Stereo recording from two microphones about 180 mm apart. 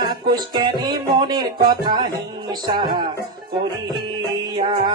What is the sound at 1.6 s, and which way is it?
Speech, 25° right (ahead or behind).